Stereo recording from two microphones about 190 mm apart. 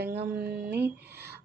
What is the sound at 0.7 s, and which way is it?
Speech, 10° right (ahead or behind).